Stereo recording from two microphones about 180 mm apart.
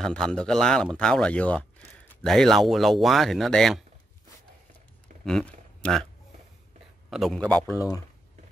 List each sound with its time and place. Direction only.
0.0 s speech: 5° left (ahead or behind)
5.2 s a sound: 5° left (ahead or behind)
7.1 s speech: centre (ahead or behind)
7.6 s speech: 20° left (ahead or behind)